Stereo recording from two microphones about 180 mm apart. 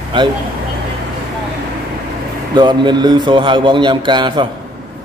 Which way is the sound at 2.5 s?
25° right (ahead or behind).